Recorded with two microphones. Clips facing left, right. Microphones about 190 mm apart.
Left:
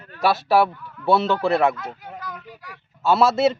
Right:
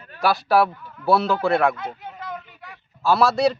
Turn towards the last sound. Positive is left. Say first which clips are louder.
# left 1 dB
turn(degrees=0)  # may be behind; listen again after turning